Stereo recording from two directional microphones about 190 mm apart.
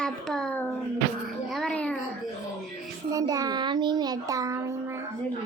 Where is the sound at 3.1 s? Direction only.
20° right (ahead or behind).